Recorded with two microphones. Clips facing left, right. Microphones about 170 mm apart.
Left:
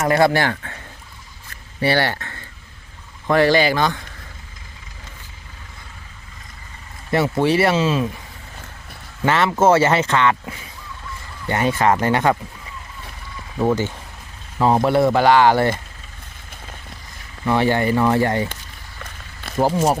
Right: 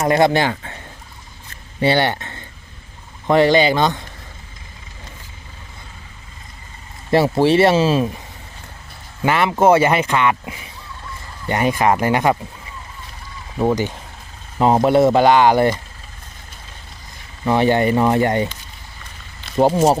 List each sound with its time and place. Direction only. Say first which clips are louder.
0.0 s speech: right 1 dB; 20° right (ahead or behind)
1.8 s speech: right 2 dB; 20° right (ahead or behind)
7.1 s speech: right 3 dB; 25° right (ahead or behind)
9.2 s speech: right 1 dB; 10° right (ahead or behind)
13.6 s speech: right 1 dB; 15° right (ahead or behind)
17.4 s speech: right 2 dB; 20° right (ahead or behind)
19.5 s speech: right 4 dB; 25° right (ahead or behind)